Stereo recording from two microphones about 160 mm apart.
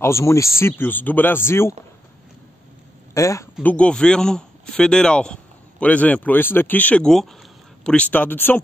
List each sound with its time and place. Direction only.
0.0 s speech: 15° left (ahead or behind)
3.2 s speech: 20° left (ahead or behind)
3.6 s speech: 5° left (ahead or behind)